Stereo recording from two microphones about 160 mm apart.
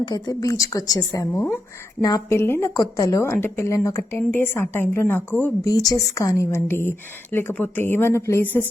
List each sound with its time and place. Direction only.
0.0 s a woman's voice: 25° left (ahead or behind)
5.7 s a woman's voice: 20° left (ahead or behind)